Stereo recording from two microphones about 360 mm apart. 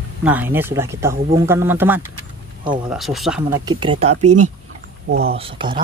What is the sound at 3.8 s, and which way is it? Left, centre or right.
Speech, centre.